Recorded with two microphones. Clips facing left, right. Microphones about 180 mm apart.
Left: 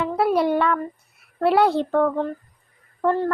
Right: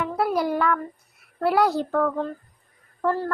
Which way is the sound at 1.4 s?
25° left (ahead or behind).